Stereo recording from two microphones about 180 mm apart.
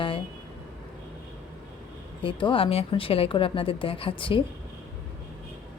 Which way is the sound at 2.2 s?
30° left (ahead or behind).